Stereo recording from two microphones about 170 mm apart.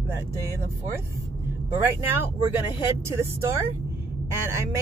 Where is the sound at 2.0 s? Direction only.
15° right (ahead or behind).